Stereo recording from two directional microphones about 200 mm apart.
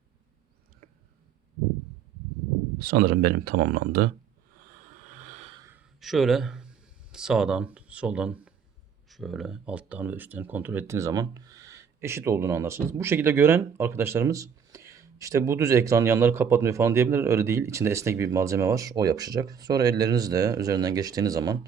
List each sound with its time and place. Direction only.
2.7 s speech: 50° right (ahead or behind)
5.0 s a sound: 40° right (ahead or behind)
5.6 s speech: 5° right (ahead or behind)